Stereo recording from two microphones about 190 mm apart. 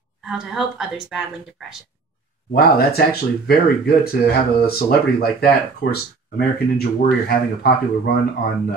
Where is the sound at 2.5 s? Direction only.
55° left (ahead or behind).